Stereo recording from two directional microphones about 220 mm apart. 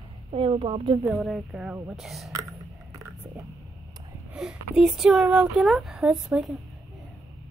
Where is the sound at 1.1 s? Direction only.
5° right (ahead or behind).